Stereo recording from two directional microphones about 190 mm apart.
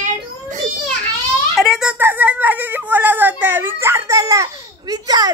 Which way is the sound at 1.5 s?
Centre (ahead or behind).